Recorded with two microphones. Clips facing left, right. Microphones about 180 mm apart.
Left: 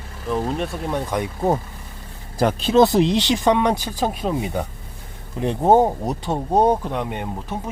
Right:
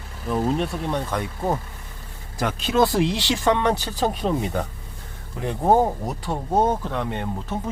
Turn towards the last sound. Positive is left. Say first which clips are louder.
# even
turn(degrees=15)  # may be behind; listen again after turning